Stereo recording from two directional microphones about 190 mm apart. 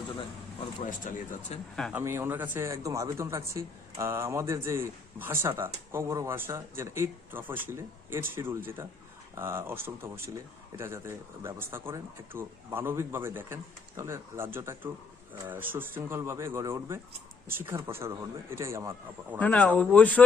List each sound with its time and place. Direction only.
0.9 s speech: 45° left (ahead or behind)
1.7 s speech: centre (ahead or behind)
2.0 s speech: 15° right (ahead or behind)
19.4 s speech: 5° left (ahead or behind)